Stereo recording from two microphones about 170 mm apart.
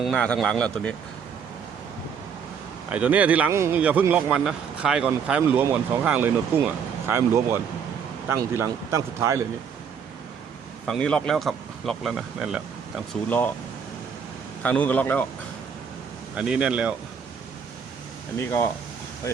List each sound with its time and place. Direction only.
0.0 s speech: 5° left (ahead or behind)
2.9 s speech: 10° right (ahead or behind)
10.8 s speech: 5° left (ahead or behind)
14.6 s a man's voice: 10° left (ahead or behind)
16.3 s speech: 5° right (ahead or behind)